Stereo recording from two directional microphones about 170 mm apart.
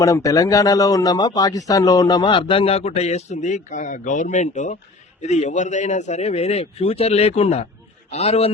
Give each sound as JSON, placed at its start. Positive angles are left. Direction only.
{"t": 0.0, "sound": "speech", "side_deg": 20}